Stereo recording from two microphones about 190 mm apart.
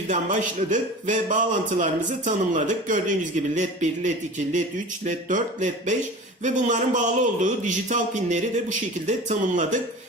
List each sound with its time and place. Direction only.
0.1 s a man's voice: 40° right (ahead or behind)